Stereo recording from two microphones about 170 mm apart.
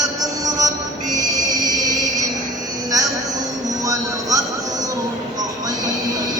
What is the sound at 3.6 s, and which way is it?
Train, 20° right (ahead or behind).